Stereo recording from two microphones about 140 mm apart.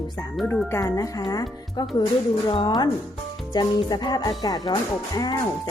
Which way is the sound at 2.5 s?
35° left (ahead or behind).